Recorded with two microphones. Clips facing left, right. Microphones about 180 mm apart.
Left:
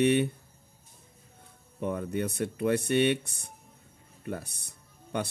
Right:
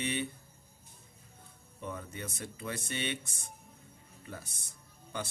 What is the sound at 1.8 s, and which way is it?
Speech, 60° left (ahead or behind).